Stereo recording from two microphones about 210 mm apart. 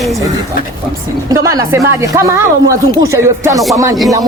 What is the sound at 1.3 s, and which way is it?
Speech, 15° right (ahead or behind).